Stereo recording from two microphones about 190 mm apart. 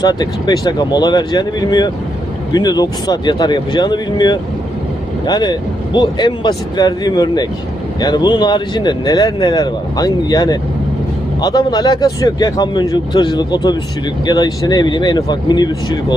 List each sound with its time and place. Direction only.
0.0 s speech: 20° left (ahead or behind)